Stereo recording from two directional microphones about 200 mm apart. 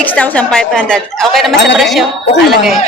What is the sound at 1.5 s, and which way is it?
Speech, 60° left (ahead or behind).